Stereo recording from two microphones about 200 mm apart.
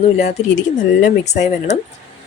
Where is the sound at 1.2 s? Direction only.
35° left (ahead or behind).